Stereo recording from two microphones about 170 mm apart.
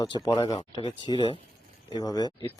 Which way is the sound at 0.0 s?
25° left (ahead or behind).